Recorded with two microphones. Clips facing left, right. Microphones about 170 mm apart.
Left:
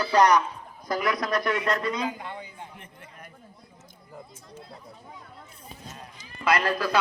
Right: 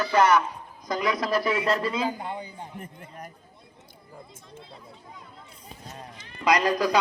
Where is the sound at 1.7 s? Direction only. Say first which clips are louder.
Right 1 dB; 30° right (ahead or behind).